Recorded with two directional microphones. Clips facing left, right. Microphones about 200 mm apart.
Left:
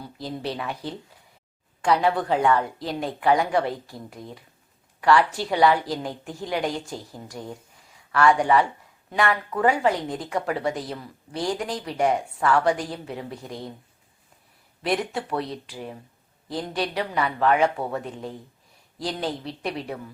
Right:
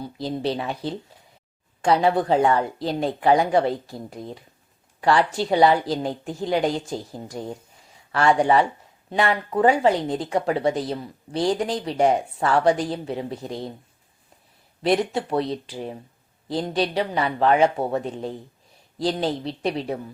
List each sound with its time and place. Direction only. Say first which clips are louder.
0.0 s speech: right 5 dB; 25° right (ahead or behind)
14.8 s speech: right 5 dB; 25° right (ahead or behind)